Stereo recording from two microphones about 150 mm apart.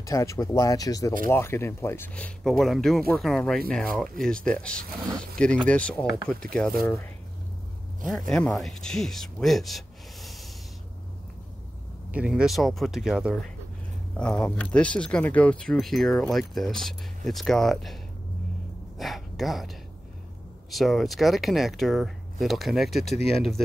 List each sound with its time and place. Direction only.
0.0 s speech: 20° left (ahead or behind)
8.1 s speech: 5° left (ahead or behind)
12.1 s speech: 5° right (ahead or behind)
18.9 s speech: centre (ahead or behind)